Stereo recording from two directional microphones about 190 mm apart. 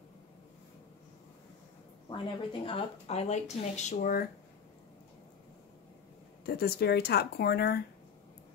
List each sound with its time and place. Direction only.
2.0 s speech: 25° left (ahead or behind)
6.4 s speech: 55° left (ahead or behind)